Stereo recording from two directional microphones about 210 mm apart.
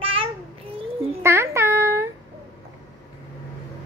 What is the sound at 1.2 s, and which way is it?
Babbling, 15° right (ahead or behind).